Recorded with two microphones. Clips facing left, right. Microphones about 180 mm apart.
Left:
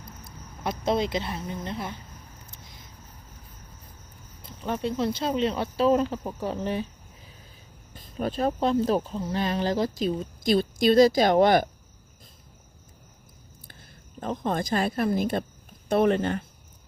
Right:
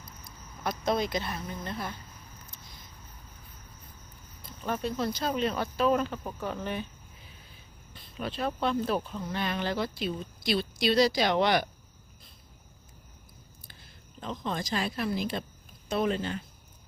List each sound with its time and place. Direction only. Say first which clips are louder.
0.3 s speech: left 2 dB; 25° left (ahead or behind)
4.4 s speech: left 3 dB; 20° left (ahead or behind)
7.9 s speech: left 6 dB; 45° left (ahead or behind)
14.2 s speech: left 6 dB; 50° left (ahead or behind)